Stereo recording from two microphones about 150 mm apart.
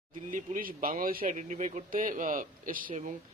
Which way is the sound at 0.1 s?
60° right (ahead or behind).